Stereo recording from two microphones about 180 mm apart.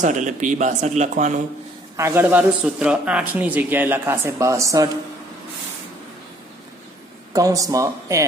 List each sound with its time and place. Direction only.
0.0 s speech: 40° right (ahead or behind)
2.0 s speech: 15° right (ahead or behind)
7.3 s speech: 20° right (ahead or behind)